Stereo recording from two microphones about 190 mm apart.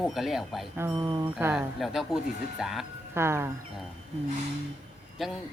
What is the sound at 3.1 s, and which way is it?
Speech, 15° right (ahead or behind).